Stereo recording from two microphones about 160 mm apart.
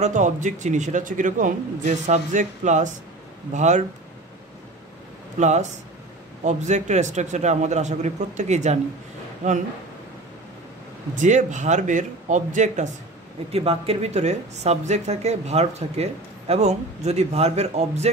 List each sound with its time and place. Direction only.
0.0 s speech: 50° right (ahead or behind)
5.4 s speech: 45° right (ahead or behind)
11.1 s speech: 50° right (ahead or behind)
13.5 s speech: 40° right (ahead or behind)